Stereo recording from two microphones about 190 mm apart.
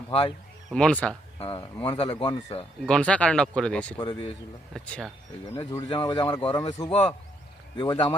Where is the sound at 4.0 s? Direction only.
25° left (ahead or behind).